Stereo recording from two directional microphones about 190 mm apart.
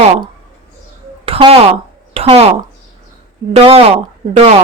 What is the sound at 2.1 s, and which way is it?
Speech, 30° right (ahead or behind).